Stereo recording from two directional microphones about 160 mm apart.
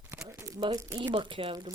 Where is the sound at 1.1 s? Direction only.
30° right (ahead or behind).